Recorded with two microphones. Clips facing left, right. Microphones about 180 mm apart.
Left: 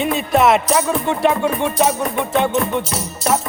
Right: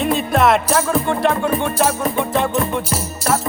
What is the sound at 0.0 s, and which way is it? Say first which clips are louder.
Music: left 1 dB; centre (ahead or behind).